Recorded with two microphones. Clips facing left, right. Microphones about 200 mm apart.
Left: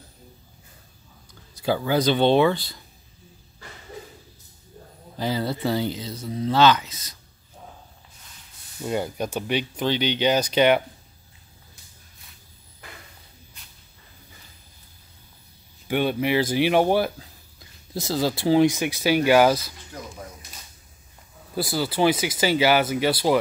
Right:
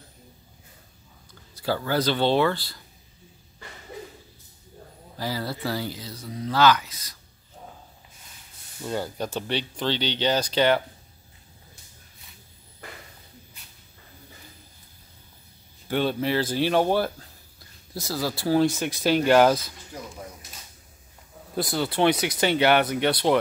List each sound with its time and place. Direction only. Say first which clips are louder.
1.6 s speech: left 3 dB; 15° left (ahead or behind)
5.1 s speech: left 4 dB; 20° left (ahead or behind)
8.8 s speech: left 3 dB; 15° left (ahead or behind)
15.9 s speech: left 2 dB; 15° left (ahead or behind)
17.9 s speech: left 5 dB; 20° left (ahead or behind); by 19.6 s 5° left (ahead or behind)
21.5 s speech: left 1 dB; 5° left (ahead or behind)